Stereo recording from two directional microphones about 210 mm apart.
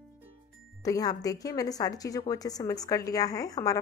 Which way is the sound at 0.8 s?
15° left (ahead or behind).